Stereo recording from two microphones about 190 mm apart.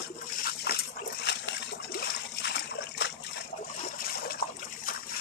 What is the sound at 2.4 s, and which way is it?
Water, 65° left (ahead or behind).